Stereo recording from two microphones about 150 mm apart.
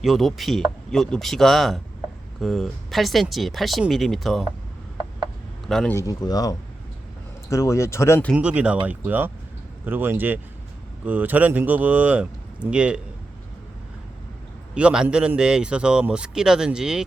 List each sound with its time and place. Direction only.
0.0 s speech: centre (ahead or behind)
5.6 s speech: centre (ahead or behind)
5.9 s speech: 20° left (ahead or behind)
8.3 s speech: 10° right (ahead or behind)
14.8 s speech: 10° right (ahead or behind)